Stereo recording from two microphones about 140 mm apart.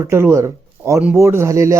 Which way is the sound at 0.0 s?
20° right (ahead or behind).